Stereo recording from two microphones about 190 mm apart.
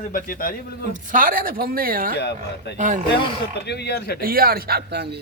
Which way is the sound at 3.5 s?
60° left (ahead or behind).